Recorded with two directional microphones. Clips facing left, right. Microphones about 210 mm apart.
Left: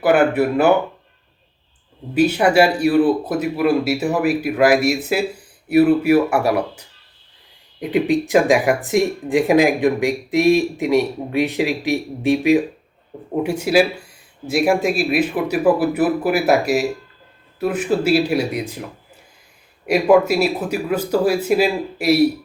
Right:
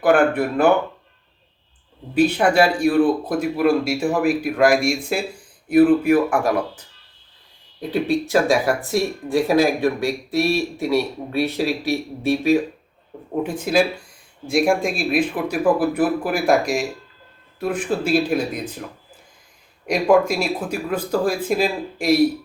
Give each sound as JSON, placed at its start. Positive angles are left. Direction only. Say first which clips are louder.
{"t": 0.0, "sound": "speech", "louder": "left 1 dB", "side_deg": 5}
{"t": 2.1, "sound": "speech", "louder": "left 2 dB", "side_deg": 5}
{"t": 19.8, "sound": "speech", "louder": "left 2 dB", "side_deg": 5}